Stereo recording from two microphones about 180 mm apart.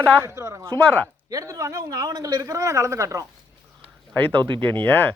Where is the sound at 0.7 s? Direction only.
10° left (ahead or behind).